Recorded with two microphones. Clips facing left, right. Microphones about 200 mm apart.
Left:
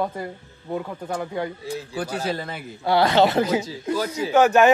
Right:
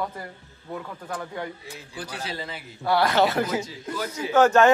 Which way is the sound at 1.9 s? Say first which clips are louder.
Left 6 dB; 50° left (ahead or behind).